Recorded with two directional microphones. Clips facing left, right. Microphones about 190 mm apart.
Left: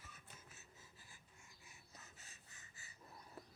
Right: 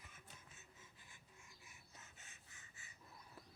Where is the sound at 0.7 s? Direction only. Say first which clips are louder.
Left 1 dB; 40° left (ahead or behind).